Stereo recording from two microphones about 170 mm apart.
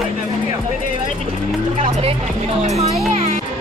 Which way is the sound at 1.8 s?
35° right (ahead or behind).